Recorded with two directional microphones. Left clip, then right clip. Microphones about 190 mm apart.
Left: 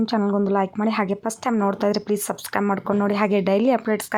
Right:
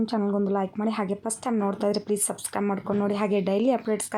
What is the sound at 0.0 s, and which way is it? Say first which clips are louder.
A woman's voice: left 4 dB; 20° left (ahead or behind).